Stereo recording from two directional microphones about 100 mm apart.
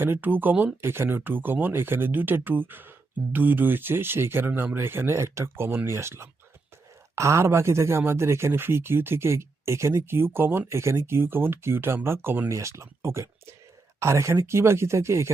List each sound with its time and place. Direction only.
0.0 s speech: 20° right (ahead or behind)